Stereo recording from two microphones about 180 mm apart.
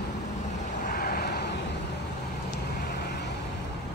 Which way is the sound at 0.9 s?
60° left (ahead or behind).